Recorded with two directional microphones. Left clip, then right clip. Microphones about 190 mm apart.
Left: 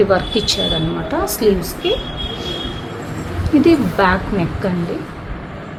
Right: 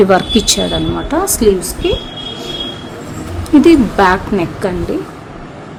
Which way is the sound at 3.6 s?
75° right (ahead or behind).